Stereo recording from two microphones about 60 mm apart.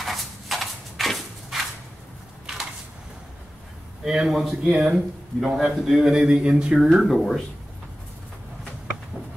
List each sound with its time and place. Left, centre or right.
0.0 s clip-clop: centre
4.0 s a man's voice: centre